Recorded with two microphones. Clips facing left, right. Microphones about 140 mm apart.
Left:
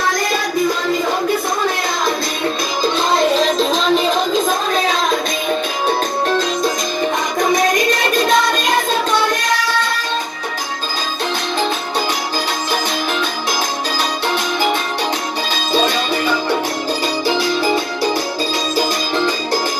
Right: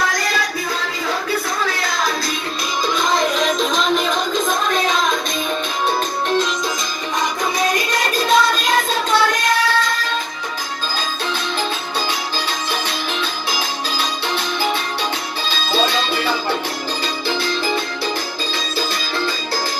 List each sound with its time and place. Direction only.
2.8 s music: 30° left (ahead or behind)
17.3 s music: 15° left (ahead or behind)